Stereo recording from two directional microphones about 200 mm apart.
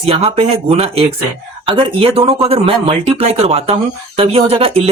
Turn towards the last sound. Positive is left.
turn(degrees=-30)  # may be behind; listen again after turning